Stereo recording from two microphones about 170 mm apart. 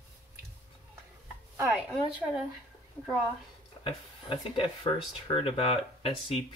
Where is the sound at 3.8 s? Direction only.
30° left (ahead or behind).